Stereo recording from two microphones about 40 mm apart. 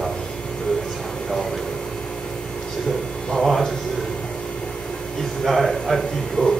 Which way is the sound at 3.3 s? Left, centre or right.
Centre.